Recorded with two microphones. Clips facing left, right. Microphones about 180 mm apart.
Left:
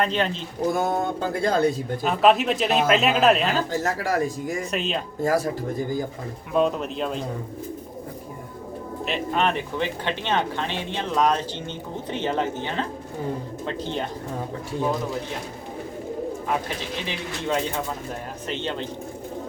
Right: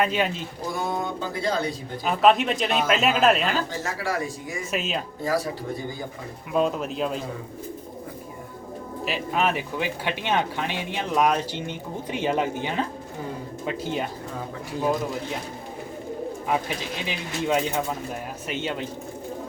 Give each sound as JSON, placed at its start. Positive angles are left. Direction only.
{"t": 0.0, "sound": "speech", "side_deg": -10}
{"t": 0.8, "sound": "a sound", "side_deg": 50}
{"t": 2.0, "sound": "speech", "side_deg": 0}
{"t": 3.7, "sound": "a sound", "side_deg": 45}
{"t": 4.7, "sound": "speech", "side_deg": -5}
{"t": 5.2, "sound": "a sound", "side_deg": 45}
{"t": 6.5, "sound": "speech", "side_deg": 0}
{"t": 9.0, "sound": "speech", "side_deg": -5}
{"t": 16.5, "sound": "speech", "side_deg": -15}